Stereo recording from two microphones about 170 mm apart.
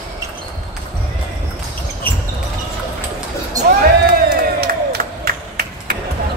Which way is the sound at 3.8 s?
60° right (ahead or behind).